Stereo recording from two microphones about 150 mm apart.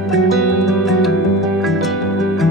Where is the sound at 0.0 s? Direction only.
Centre (ahead or behind).